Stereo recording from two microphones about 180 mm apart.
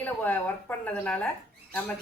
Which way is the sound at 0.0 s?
10° left (ahead or behind).